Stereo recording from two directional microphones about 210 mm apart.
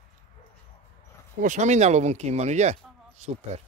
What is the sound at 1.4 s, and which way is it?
Speech, 35° right (ahead or behind).